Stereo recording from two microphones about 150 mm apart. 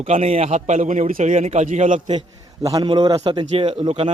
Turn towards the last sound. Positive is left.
turn(degrees=-35)  # may be behind; listen again after turning